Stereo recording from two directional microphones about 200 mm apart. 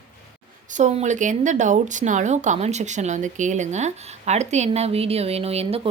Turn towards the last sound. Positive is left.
turn(degrees=-30)  # may be behind; listen again after turning